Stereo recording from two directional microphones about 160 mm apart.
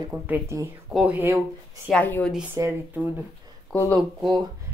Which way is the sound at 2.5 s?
15° right (ahead or behind).